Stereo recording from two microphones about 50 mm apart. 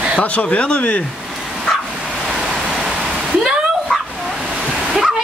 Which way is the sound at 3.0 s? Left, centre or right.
Centre.